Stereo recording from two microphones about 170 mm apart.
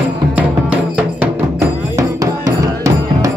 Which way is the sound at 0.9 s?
10° right (ahead or behind).